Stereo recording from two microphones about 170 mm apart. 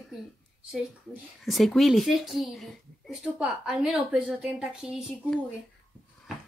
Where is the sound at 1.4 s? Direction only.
Centre (ahead or behind).